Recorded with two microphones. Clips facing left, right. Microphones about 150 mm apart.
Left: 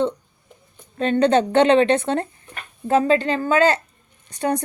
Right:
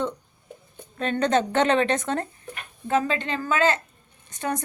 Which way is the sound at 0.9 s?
30° left (ahead or behind).